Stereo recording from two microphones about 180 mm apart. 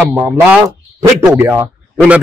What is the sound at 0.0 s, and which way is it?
Speech, 10° right (ahead or behind).